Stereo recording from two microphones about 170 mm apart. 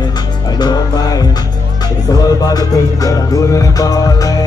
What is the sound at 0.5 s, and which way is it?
Music, 25° left (ahead or behind).